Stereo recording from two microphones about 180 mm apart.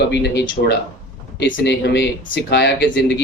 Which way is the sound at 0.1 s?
65° left (ahead or behind).